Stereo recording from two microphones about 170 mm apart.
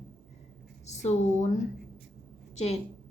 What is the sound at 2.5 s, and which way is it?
Speech, 40° left (ahead or behind).